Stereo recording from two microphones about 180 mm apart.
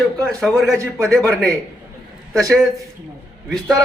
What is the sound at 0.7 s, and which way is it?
Speech, 15° right (ahead or behind).